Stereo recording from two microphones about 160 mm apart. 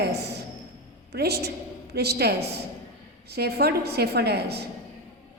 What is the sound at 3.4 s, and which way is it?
A woman's voice, 80° right.